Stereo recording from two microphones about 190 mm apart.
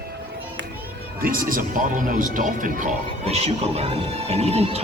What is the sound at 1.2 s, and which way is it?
Speech, 50° right (ahead or behind).